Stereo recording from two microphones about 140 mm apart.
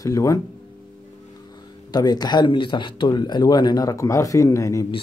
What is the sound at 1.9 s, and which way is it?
Speech, 30° left (ahead or behind).